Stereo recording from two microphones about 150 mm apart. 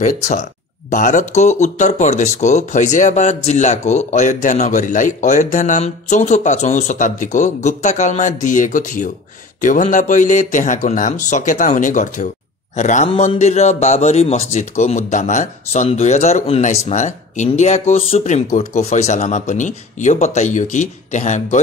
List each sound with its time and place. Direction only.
0.3 s speech: 55° left (ahead or behind)
13.1 s a sound: 35° left (ahead or behind)
13.4 s speech: 45° left (ahead or behind)